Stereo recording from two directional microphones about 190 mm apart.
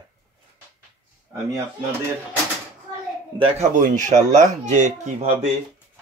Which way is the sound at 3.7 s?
40° right (ahead or behind).